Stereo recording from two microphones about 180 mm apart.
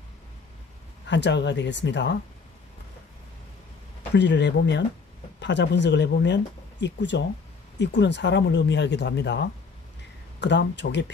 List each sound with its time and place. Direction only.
1.0 s speech: 80° left
4.1 s speech: 75° left (ahead or behind)